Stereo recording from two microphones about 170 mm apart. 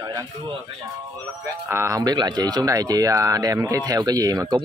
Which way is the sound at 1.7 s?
15° right (ahead or behind).